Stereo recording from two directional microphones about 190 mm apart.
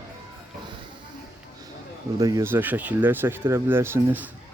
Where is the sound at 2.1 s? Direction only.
20° right (ahead or behind).